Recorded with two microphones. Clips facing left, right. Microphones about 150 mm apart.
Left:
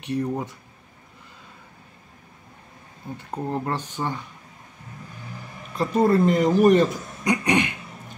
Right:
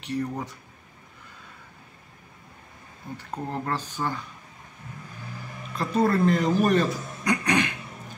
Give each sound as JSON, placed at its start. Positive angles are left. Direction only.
{"t": 0.0, "sound": "speech", "side_deg": 20}
{"t": 3.2, "sound": "speech", "side_deg": 15}
{"t": 5.8, "sound": "speech", "side_deg": 20}